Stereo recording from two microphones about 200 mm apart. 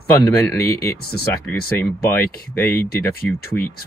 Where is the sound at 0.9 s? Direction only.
50° left (ahead or behind).